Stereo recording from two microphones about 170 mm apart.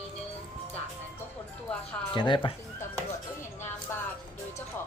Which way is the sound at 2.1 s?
30° left (ahead or behind).